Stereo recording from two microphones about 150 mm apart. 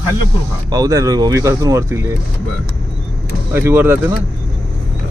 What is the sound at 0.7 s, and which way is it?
Speech, 25° right (ahead or behind).